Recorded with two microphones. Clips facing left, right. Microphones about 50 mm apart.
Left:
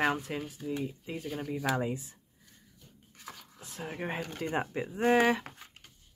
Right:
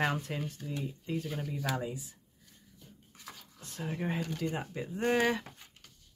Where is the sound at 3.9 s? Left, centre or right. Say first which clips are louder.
Right 1 dB; left.